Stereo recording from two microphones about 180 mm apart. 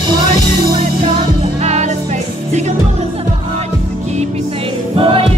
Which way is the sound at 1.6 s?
40° right (ahead or behind).